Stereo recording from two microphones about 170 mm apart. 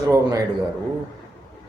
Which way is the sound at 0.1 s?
20° right (ahead or behind).